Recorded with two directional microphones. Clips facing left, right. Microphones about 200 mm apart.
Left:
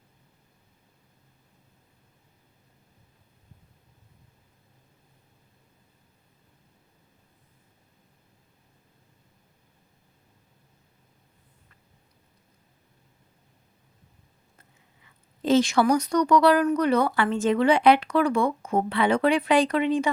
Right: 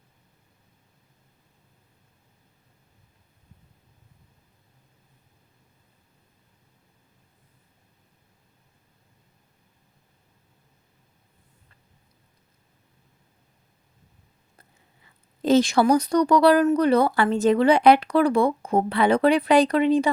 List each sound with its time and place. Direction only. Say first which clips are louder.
15.0 s speech: right 3 dB; 40° right (ahead or behind)